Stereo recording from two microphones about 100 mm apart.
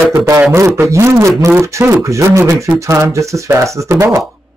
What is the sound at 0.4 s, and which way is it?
A man's voice, 20° right (ahead or behind).